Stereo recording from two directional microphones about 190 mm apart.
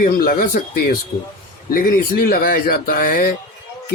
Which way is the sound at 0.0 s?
50° left (ahead or behind).